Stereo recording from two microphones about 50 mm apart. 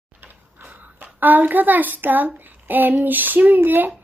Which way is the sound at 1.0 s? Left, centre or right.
Right.